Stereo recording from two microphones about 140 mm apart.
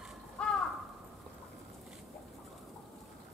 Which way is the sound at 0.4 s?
5° left (ahead or behind).